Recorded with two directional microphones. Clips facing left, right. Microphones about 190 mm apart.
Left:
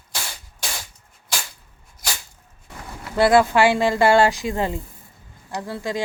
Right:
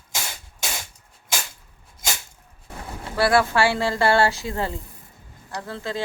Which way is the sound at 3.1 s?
20° left (ahead or behind).